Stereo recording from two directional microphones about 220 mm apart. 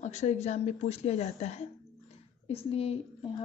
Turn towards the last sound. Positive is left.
turn(degrees=25)  # may be behind; listen again after turning